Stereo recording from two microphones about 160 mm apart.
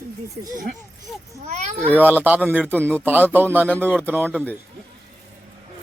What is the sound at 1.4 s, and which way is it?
Speech, 45° right (ahead or behind).